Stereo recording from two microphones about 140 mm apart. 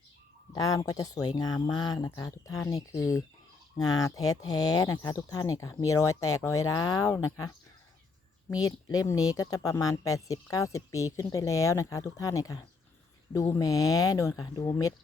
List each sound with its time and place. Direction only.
0.5 s speech: 25° left (ahead or behind)
8.6 s speech: 25° left (ahead or behind)